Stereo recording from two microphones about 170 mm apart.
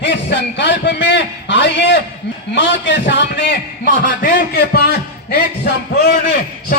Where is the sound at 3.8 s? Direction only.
55° left (ahead or behind).